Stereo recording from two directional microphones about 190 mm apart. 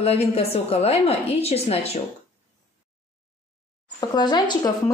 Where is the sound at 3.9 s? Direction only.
20° left (ahead or behind).